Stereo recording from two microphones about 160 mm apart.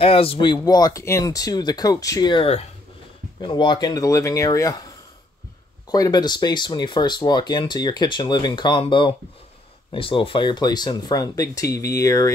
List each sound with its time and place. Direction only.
0.0 s speech: 35° left (ahead or behind); by 12.3 s 20° left (ahead or behind)